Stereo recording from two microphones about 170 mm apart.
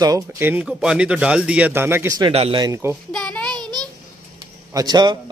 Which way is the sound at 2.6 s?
15° right (ahead or behind).